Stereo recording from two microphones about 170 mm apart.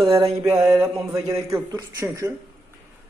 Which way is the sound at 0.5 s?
15° right (ahead or behind).